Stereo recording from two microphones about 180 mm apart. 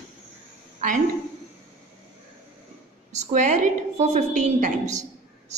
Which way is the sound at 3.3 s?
45° right (ahead or behind).